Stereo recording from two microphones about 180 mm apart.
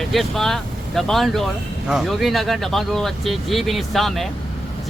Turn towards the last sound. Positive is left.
turn(degrees=0)  # may be behind; listen again after turning